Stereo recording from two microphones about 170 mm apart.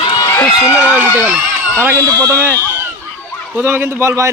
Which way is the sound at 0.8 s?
10° right (ahead or behind).